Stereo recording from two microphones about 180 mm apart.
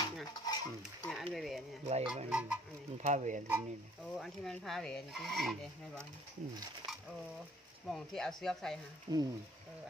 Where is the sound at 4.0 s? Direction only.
Centre (ahead or behind).